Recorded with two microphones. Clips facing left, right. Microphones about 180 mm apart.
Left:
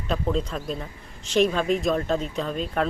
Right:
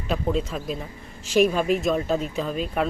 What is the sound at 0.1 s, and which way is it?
Speech, 5° right (ahead or behind).